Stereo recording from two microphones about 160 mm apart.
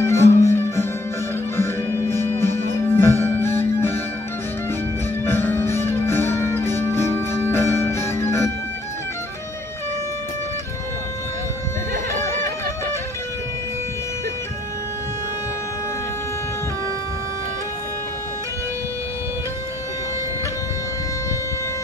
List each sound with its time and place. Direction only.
0.0 s music: 15° left (ahead or behind)
5.2 s music: 15° left (ahead or behind)